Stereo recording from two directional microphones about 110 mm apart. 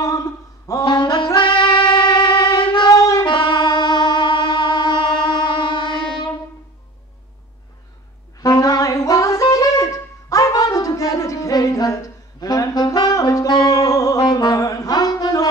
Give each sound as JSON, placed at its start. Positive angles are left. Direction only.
{"t": 0.0, "sound": "a sound", "side_deg": 30}
{"t": 0.8, "sound": "music", "side_deg": 45}
{"t": 2.9, "sound": "music", "side_deg": 30}
{"t": 3.2, "sound": "music", "side_deg": 45}
{"t": 8.4, "sound": "wind instrument", "side_deg": 35}